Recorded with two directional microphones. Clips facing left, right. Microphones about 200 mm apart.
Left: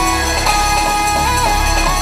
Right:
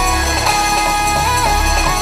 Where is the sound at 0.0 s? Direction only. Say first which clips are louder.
Left 1 dB; centre (ahead or behind).